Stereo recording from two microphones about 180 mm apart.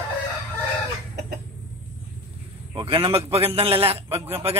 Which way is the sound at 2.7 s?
25° right (ahead or behind).